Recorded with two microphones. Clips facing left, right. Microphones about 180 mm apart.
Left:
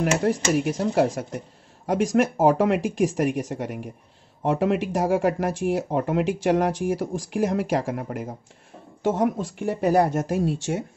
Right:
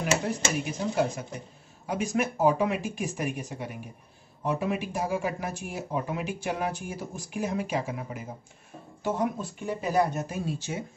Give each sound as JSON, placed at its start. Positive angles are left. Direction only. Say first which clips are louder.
{"t": 0.0, "sound": "speech", "louder": "left 6 dB", "side_deg": 75}
{"t": 9.0, "sound": "speech", "louder": "left 6 dB", "side_deg": 90}